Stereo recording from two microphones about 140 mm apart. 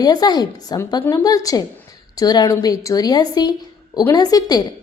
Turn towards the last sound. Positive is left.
turn(degrees=30)  # may be behind; listen again after turning